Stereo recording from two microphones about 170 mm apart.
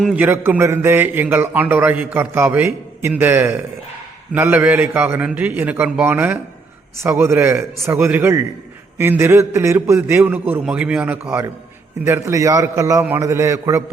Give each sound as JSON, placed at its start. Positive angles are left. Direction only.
{"t": 0.0, "sound": "a man's voice", "side_deg": -10}